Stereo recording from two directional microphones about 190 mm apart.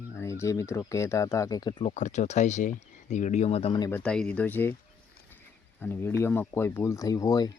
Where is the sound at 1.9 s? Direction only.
40° left (ahead or behind).